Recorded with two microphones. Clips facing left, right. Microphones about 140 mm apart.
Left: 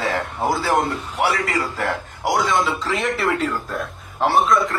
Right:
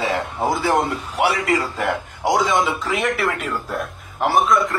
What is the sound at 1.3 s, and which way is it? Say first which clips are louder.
A man's voice: right 3 dB; 20° right (ahead or behind).